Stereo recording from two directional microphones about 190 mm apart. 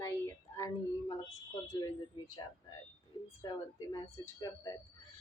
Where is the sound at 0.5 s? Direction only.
15° left (ahead or behind).